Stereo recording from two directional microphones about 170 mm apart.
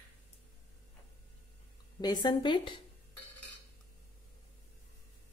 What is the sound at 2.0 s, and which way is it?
Speech, 25° left (ahead or behind).